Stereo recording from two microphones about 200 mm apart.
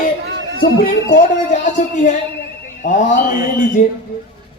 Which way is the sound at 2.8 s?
40° left (ahead or behind).